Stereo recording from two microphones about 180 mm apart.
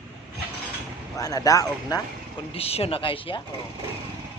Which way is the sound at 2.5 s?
35° left (ahead or behind).